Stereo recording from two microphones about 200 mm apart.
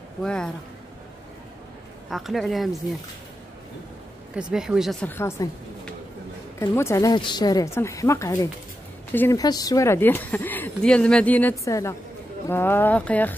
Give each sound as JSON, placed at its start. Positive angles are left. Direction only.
{"t": 0.2, "sound": "speech", "side_deg": 5}
{"t": 2.0, "sound": "speech", "side_deg": 0}
{"t": 4.4, "sound": "speech", "side_deg": -5}
{"t": 5.0, "sound": "speech", "side_deg": 10}
{"t": 6.6, "sound": "speech", "side_deg": 15}